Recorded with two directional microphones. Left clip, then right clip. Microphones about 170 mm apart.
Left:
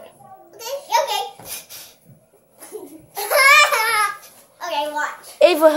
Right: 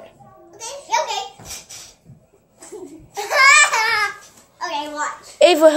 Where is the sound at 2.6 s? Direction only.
15° left (ahead or behind).